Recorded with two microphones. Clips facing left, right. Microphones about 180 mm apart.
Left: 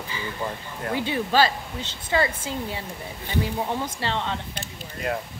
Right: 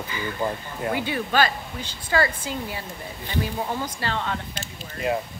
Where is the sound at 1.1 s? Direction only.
25° left (ahead or behind).